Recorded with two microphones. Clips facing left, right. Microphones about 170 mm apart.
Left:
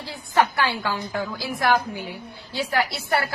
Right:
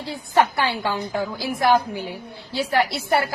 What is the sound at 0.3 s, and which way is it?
A woman's voice, 20° right (ahead or behind).